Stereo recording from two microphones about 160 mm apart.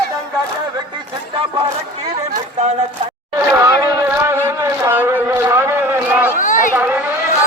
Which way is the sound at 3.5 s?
15° right (ahead or behind).